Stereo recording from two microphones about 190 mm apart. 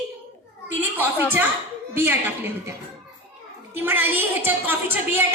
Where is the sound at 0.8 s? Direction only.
10° right (ahead or behind).